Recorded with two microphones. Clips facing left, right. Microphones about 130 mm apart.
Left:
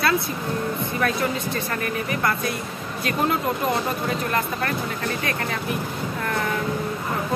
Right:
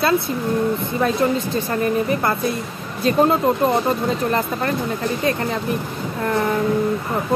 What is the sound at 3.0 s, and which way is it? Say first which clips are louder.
Speech: right 7 dB; 30° right (ahead or behind).